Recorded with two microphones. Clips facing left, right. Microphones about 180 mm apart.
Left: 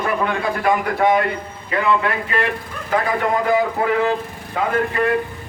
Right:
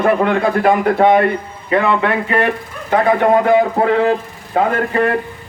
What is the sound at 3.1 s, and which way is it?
Speech, 60° right (ahead or behind).